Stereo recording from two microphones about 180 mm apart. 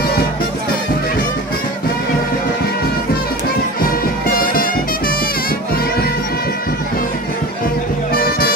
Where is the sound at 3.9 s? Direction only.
55° left (ahead or behind).